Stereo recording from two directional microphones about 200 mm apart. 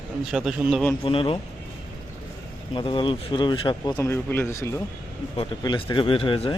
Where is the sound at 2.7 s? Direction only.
25° left (ahead or behind).